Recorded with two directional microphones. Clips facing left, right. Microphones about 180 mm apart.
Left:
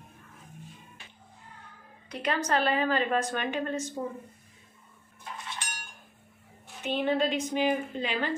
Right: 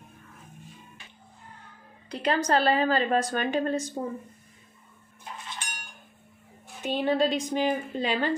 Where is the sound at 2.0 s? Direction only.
35° right (ahead or behind).